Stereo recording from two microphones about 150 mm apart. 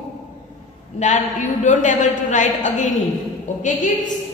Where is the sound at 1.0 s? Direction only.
55° left (ahead or behind).